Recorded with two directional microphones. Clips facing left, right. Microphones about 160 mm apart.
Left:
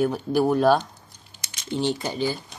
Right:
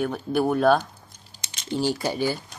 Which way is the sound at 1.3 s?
40° right (ahead or behind).